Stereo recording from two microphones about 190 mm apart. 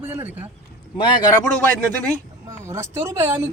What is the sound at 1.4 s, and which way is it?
Speech, 10° left (ahead or behind).